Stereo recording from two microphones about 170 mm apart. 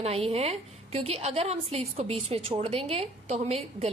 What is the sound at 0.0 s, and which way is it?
A woman's voice, 35° right (ahead or behind).